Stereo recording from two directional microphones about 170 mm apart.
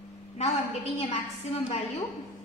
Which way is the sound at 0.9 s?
35° left (ahead or behind).